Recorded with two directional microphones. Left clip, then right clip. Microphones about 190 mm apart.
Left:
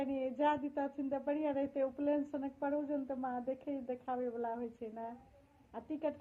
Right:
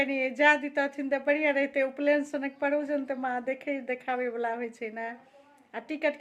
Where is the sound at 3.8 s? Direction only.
90° right.